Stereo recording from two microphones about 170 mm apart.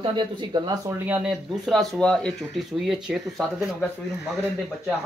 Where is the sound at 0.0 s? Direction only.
25° right (ahead or behind); by 3.7 s centre (ahead or behind).